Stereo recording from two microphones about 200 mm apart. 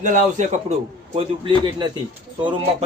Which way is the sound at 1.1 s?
25° right (ahead or behind).